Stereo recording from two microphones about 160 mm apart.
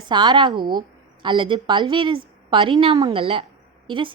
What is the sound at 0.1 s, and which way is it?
A woman's voice, 25° right (ahead or behind).